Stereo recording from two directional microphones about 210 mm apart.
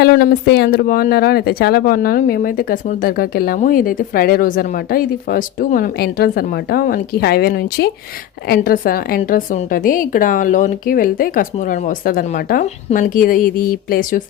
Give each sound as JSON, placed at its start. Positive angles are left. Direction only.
{"t": 0.0, "sound": "a woman's voice", "side_deg": 55}